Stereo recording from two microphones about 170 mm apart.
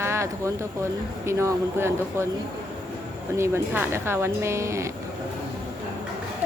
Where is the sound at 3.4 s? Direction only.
15° right (ahead or behind).